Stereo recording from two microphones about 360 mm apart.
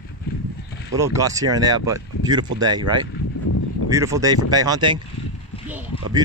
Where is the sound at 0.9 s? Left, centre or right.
Centre.